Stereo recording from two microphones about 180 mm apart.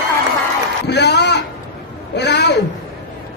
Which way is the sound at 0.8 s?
70° left (ahead or behind).